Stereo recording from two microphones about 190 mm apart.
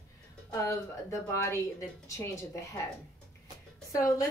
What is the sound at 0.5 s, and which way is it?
Speech, 15° left (ahead or behind).